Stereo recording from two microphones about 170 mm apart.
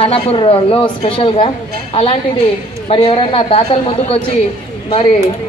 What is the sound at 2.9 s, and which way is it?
A man's voice, 35° left (ahead or behind).